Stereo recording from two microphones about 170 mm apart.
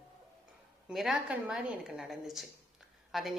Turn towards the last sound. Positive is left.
turn(degrees=0)  # may be behind; listen again after turning